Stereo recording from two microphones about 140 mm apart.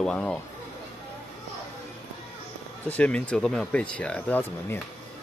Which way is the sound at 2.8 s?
10° left (ahead or behind).